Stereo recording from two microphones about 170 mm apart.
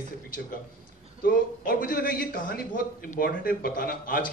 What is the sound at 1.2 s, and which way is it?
A man's voice, 55° left (ahead or behind).